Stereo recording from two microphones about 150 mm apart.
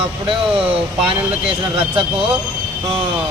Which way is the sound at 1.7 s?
35° right (ahead or behind).